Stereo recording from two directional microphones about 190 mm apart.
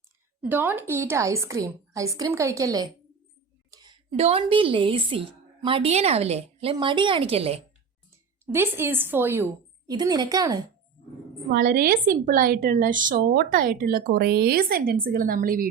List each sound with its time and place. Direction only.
0.4 s a woman's voice: 10° right (ahead or behind)
3.7 s a sound: 20° right (ahead or behind)
4.2 s a woman's voice: 30° right (ahead or behind)
8.5 s a woman's voice: 10° right (ahead or behind)
11.5 s a woman's voice: 50° right (ahead or behind)